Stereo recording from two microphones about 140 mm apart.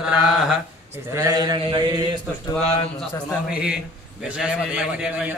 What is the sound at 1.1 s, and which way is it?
Mantra, 25° right (ahead or behind).